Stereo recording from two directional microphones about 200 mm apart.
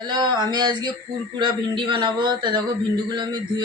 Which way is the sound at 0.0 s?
20° right (ahead or behind).